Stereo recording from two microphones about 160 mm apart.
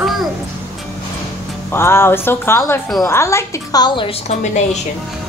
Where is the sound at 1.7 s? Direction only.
15° left (ahead or behind).